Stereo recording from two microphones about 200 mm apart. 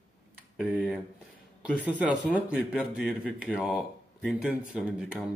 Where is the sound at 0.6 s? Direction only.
5° right (ahead or behind).